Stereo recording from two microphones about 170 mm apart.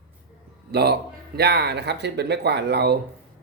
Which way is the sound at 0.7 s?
70° right (ahead or behind).